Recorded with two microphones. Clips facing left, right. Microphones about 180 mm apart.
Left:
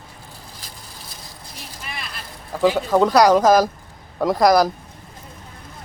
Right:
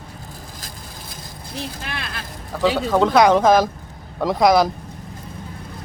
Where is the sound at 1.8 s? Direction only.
85° right.